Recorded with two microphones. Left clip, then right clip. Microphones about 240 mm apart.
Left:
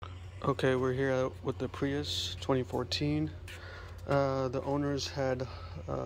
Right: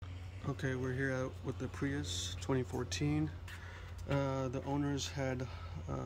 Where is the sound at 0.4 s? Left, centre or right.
Centre.